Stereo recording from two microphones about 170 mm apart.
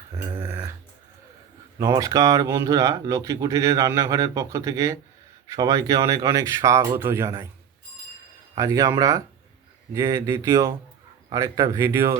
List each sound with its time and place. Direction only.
0.3 s a sound: 10° right (ahead or behind)
1.8 s speech: 20° right (ahead or behind)
8.5 s speech: 20° right (ahead or behind)